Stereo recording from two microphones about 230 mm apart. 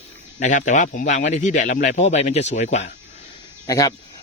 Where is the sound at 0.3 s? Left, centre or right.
Left.